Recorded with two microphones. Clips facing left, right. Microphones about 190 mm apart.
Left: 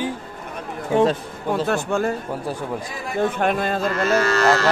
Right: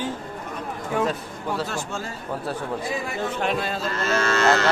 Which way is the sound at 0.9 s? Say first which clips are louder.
Left 7 dB; 25° left (ahead or behind).